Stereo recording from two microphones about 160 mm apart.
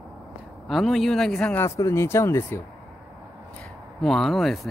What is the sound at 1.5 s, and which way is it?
Speech, 15° left (ahead or behind).